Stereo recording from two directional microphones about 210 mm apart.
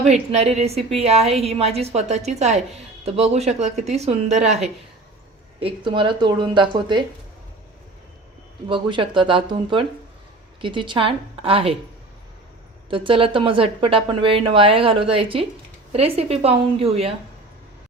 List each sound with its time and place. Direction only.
0.1 s a woman's voice: 30° right (ahead or behind)
5.5 s a woman's voice: 25° right (ahead or behind)
8.7 s a woman's voice: 25° right (ahead or behind)
12.9 s a woman's voice: 25° right (ahead or behind)